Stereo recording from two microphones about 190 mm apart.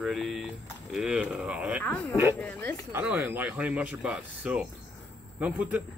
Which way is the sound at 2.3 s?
10° left (ahead or behind).